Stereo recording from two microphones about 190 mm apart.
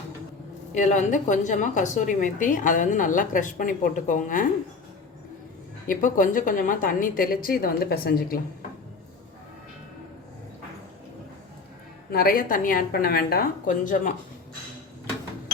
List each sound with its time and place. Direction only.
0.7 s a woman's voice: 40° left (ahead or behind)
5.9 s a woman's voice: 45° left (ahead or behind)
12.1 s a woman's voice: 50° left (ahead or behind)